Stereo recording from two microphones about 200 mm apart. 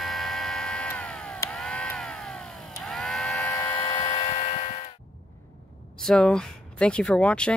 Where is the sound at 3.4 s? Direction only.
15° left (ahead or behind); by 4.9 s 30° left (ahead or behind).